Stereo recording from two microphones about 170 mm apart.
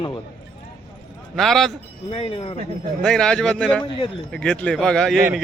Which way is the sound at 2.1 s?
30° left (ahead or behind).